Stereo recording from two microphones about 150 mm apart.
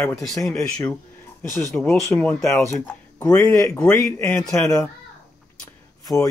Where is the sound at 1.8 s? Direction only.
10° left (ahead or behind).